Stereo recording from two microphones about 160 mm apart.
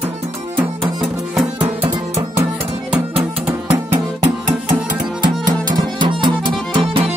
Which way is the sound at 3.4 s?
10° right (ahead or behind).